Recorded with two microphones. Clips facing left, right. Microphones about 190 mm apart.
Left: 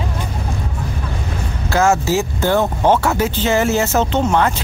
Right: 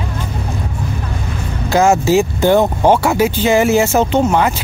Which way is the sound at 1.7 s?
15° right (ahead or behind).